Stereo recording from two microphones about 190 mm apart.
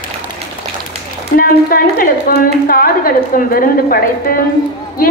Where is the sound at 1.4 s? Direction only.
50° left (ahead or behind).